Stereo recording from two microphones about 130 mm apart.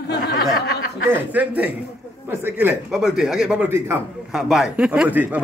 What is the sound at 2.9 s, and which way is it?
Speech, 5° right (ahead or behind).